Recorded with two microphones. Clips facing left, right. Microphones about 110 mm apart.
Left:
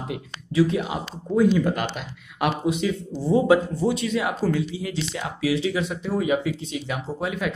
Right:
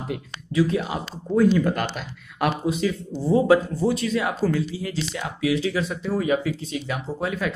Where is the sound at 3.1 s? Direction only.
Centre (ahead or behind).